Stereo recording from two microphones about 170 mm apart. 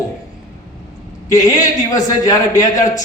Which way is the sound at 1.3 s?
20° left (ahead or behind).